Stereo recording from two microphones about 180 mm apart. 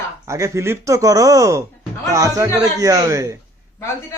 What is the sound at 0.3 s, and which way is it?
A man's voice, 15° right (ahead or behind).